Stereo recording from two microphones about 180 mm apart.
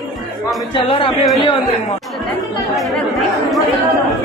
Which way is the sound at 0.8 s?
30° left (ahead or behind).